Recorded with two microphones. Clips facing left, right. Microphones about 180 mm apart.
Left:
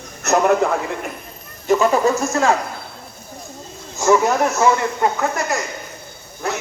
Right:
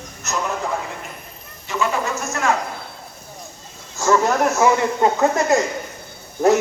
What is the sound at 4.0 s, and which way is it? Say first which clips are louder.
Speech: left 2 dB; 15° left (ahead or behind).